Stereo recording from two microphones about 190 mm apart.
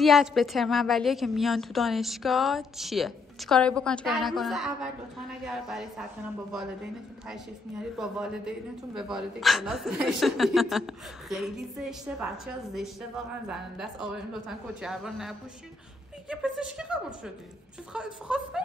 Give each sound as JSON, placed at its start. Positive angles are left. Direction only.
{"t": 0.0, "sound": "a woman's voice", "side_deg": 0}